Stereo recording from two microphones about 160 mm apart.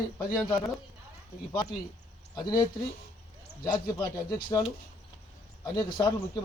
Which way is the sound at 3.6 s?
25° left (ahead or behind).